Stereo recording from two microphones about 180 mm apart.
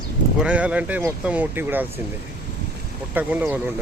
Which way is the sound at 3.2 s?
10° right (ahead or behind).